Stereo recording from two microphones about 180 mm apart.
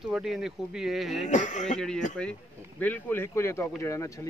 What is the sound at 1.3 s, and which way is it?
Speech, 40° left (ahead or behind).